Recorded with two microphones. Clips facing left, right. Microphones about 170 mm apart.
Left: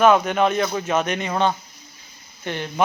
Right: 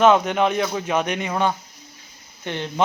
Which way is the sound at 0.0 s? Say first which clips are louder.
Even; 20° right (ahead or behind).